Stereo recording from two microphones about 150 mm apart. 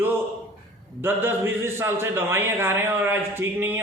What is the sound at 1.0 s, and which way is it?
A man's voice, 15° right (ahead or behind).